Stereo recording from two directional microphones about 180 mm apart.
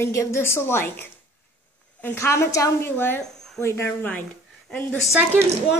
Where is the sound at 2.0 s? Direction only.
15° left (ahead or behind).